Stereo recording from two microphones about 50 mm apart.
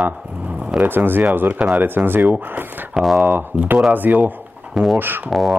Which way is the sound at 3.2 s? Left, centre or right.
Right.